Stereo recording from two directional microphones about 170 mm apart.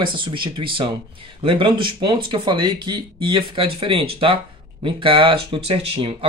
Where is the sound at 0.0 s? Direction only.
30° right (ahead or behind).